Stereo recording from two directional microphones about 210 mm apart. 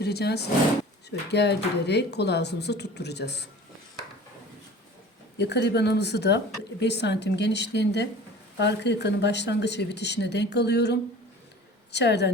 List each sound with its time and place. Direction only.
0.0 s speech: 50° left (ahead or behind)
5.4 s speech: 55° left (ahead or behind)